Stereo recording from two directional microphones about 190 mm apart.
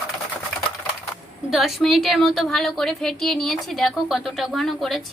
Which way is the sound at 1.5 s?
Centre (ahead or behind).